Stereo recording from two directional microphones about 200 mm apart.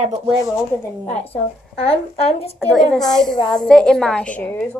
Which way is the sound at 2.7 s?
Centre (ahead or behind).